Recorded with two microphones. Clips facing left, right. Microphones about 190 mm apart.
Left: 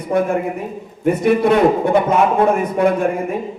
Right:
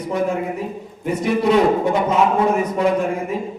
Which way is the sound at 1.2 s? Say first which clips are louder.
Left 2 dB; 55° left (ahead or behind).